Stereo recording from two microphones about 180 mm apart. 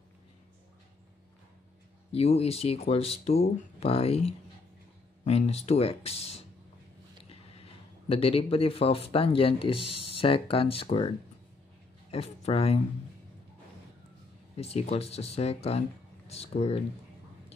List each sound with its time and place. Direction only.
2.1 s speech: 35° left (ahead or behind)
12.1 s speech: 35° left (ahead or behind)
14.6 s speech: 35° left (ahead or behind)